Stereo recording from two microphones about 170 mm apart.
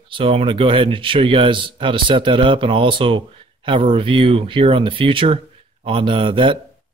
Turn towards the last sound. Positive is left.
turn(degrees=-30)  # may be behind; listen again after turning